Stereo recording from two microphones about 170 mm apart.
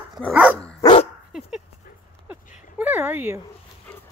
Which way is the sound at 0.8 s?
35° left (ahead or behind).